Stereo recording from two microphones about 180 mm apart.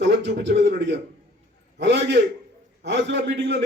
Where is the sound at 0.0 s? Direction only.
70° right (ahead or behind).